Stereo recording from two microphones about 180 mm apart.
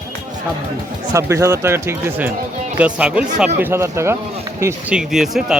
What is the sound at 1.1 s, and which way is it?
Speech, 15° right (ahead or behind).